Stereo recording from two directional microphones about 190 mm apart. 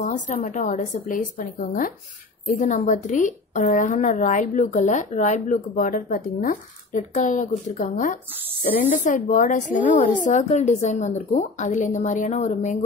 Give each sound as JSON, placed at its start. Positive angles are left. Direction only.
{"t": 0.0, "sound": "a woman's voice", "side_deg": 45}